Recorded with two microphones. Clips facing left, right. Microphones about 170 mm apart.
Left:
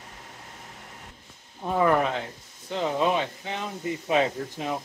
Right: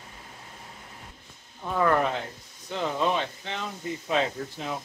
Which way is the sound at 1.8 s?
15° left (ahead or behind).